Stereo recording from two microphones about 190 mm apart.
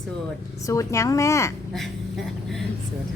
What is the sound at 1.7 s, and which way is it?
Speech, centre (ahead or behind).